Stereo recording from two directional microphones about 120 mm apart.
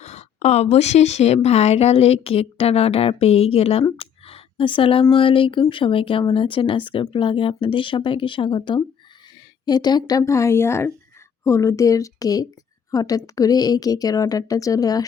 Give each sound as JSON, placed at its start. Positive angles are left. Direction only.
{"t": 0.0, "sound": "a woman's voice", "side_deg": 70}
{"t": 3.9, "sound": "a sound", "side_deg": 50}
{"t": 5.1, "sound": "a woman's voice", "side_deg": 45}